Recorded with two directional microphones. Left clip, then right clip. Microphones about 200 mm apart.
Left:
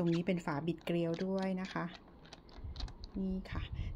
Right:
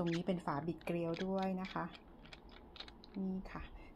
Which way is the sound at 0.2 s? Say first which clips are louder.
Left 2 dB; 40° left (ahead or behind).